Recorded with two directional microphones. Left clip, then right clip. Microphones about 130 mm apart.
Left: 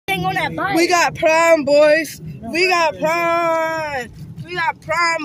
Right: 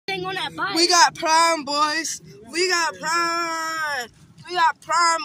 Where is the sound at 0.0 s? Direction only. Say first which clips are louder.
Left 7 dB; 80° left.